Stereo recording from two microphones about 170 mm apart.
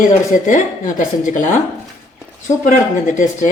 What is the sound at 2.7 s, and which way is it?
Speech, 50° left (ahead or behind).